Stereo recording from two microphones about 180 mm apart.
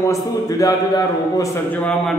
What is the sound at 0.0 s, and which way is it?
A man's voice, 15° left (ahead or behind).